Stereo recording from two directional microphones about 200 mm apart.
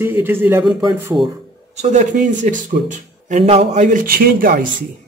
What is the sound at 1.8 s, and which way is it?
Speech, 35° right (ahead or behind).